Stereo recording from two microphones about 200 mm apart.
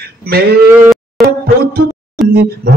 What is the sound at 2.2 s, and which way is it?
Speech, centre (ahead or behind).